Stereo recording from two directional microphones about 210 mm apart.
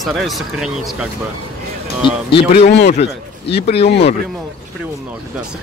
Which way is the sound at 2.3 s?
30° left (ahead or behind).